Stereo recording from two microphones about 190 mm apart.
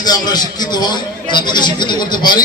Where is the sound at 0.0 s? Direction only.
20° left (ahead or behind).